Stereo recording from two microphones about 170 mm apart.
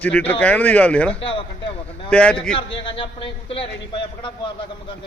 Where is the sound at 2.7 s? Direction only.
30° left (ahead or behind).